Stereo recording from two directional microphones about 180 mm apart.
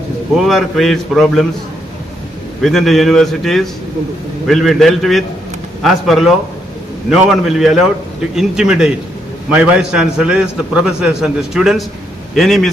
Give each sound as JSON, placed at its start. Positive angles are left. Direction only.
{"t": 0.4, "sound": "a man's voice", "side_deg": 0}
{"t": 2.6, "sound": "a man's voice", "side_deg": 0}